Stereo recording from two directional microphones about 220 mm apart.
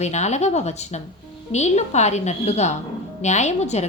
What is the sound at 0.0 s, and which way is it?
A woman's voice, 30° left (ahead or behind).